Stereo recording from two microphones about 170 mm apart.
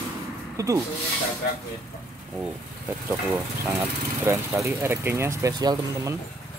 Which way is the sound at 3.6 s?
15° right (ahead or behind).